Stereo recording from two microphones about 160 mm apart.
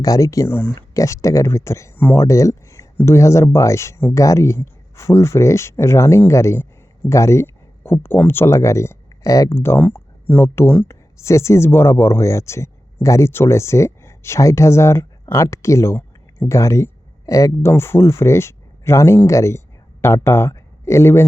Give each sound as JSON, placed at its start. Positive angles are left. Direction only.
{"t": 0.0, "sound": "speech", "side_deg": 20}